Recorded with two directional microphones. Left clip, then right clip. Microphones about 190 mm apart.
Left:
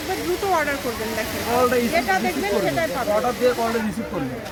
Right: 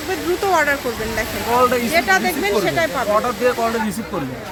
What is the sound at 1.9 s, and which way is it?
Speech, 25° right (ahead or behind).